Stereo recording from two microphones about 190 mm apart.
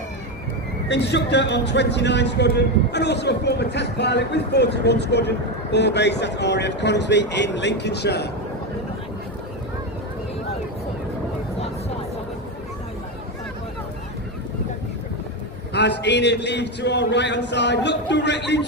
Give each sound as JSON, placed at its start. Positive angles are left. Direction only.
{"t": 0.9, "sound": "a man's voice", "side_deg": 65}
{"t": 15.7, "sound": "a man's voice", "side_deg": 65}